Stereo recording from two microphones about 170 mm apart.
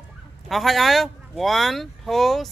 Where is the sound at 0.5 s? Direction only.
Centre (ahead or behind).